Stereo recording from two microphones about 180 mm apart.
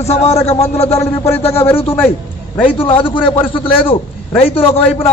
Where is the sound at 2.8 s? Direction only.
25° left (ahead or behind).